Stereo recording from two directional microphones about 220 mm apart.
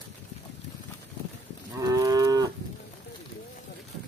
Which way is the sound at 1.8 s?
15° right (ahead or behind).